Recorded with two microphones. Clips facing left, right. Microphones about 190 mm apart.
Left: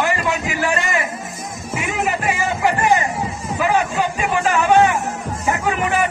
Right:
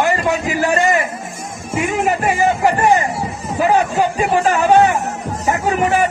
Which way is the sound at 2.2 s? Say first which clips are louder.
Right 5 dB; 35° right (ahead or behind).